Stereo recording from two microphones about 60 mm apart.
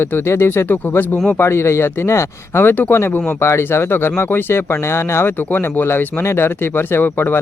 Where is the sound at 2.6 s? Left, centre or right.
Left.